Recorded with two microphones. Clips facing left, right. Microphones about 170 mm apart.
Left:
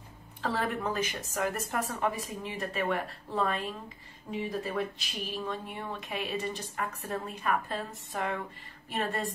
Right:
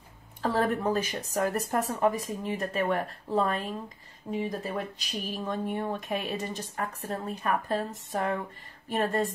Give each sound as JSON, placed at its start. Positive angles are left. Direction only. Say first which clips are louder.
{"t": 0.4, "sound": "speech", "louder": "right 5 dB", "side_deg": -40}